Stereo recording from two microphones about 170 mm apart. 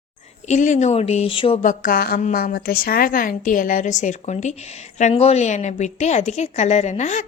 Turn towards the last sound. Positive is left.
turn(degrees=45)  # may be behind; listen again after turning